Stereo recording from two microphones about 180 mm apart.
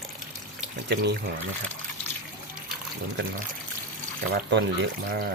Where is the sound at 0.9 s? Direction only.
70° right (ahead or behind).